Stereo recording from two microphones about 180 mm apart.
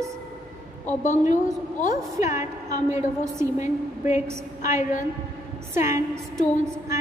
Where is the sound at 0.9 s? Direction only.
40° left (ahead or behind).